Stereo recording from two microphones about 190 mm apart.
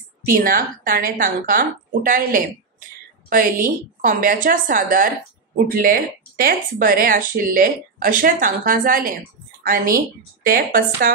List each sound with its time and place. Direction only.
0.3 s a woman's voice: 45° right (ahead or behind)